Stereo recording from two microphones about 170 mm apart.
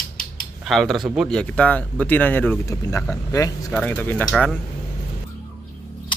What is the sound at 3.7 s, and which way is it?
Speech, 10° left (ahead or behind).